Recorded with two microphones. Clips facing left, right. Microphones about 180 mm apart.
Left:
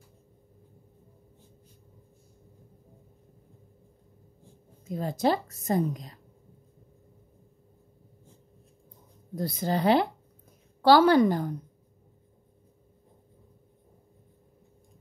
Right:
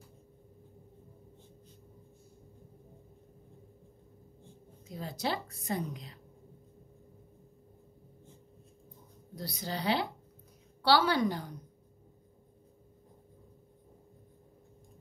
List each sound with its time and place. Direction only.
4.8 s a woman's voice: 50° left (ahead or behind)
9.3 s a woman's voice: 50° left (ahead or behind)